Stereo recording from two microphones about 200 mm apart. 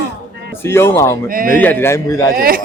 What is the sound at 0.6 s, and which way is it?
Speech, 10° left (ahead or behind).